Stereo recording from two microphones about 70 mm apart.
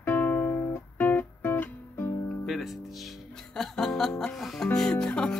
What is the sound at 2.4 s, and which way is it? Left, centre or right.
Speech, centre.